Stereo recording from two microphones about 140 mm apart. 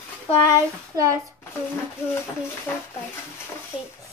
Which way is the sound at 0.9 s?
20° right (ahead or behind).